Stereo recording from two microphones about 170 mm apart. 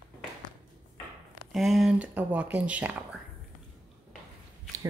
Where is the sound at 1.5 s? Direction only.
Centre (ahead or behind).